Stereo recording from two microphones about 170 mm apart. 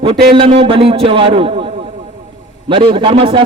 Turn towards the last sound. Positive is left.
turn(degrees=-30)  # may be behind; listen again after turning